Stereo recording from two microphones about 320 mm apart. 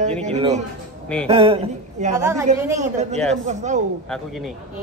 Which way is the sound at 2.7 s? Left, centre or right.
Right.